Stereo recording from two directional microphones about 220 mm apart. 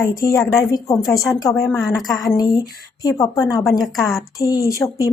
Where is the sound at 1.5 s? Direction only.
Centre (ahead or behind).